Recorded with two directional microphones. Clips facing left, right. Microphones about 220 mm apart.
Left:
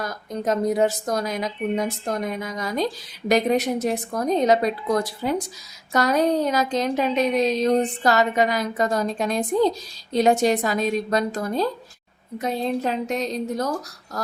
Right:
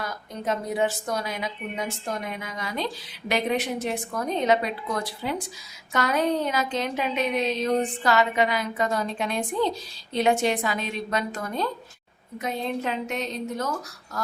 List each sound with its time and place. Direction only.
0.0 s speech: 40° left (ahead or behind)